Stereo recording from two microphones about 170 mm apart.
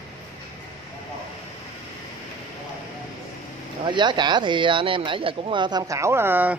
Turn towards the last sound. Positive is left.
turn(degrees=-10)  # may be behind; listen again after turning